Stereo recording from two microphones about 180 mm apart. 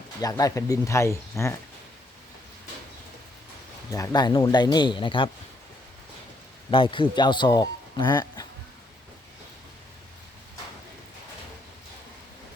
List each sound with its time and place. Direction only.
0.2 s speech: 20° left (ahead or behind)
3.9 s speech: 20° left (ahead or behind)
6.7 s speech: 30° left (ahead or behind)